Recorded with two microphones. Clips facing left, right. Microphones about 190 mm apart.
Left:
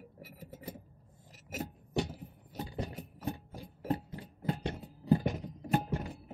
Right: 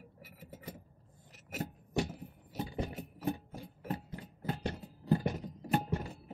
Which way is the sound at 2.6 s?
15° right (ahead or behind).